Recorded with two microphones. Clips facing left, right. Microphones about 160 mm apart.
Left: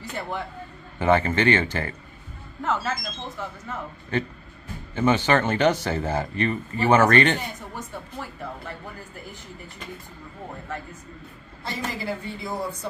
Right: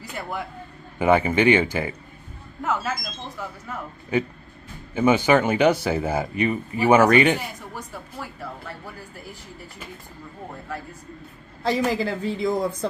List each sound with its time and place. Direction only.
0.9 s speech: 10° right (ahead or behind)
11.6 s a woman's voice: 90° right